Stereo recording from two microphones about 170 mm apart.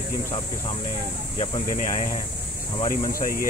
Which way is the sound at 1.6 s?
50° left (ahead or behind).